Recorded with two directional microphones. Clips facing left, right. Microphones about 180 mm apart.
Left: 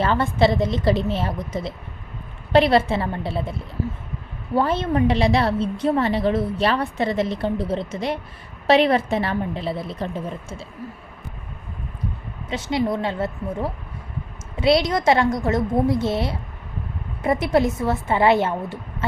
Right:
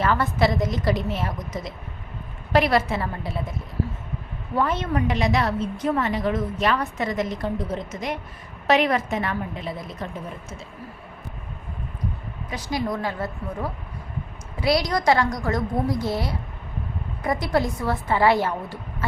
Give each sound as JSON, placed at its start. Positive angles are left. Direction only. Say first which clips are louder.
{"t": 0.0, "sound": "a woman's voice", "louder": "left 3 dB", "side_deg": 25}
{"t": 4.5, "sound": "a woman's voice", "louder": "left 3 dB", "side_deg": 30}
{"t": 12.5, "sound": "a woman's voice", "louder": "left 4 dB", "side_deg": 25}